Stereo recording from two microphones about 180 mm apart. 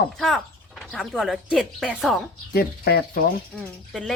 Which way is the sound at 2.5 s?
60° left (ahead or behind).